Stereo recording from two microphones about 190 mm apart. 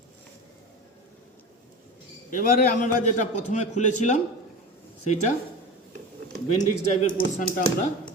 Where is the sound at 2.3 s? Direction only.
45° left (ahead or behind).